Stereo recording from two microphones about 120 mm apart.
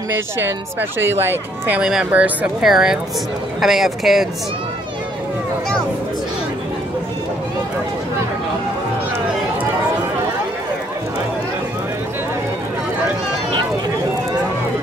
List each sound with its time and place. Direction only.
0.4 s speech: 20° right (ahead or behind)
1.8 s speech: 5° right (ahead or behind)